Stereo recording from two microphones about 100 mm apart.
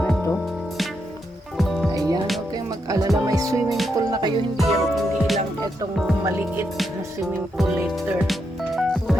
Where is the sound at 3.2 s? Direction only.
35° right (ahead or behind).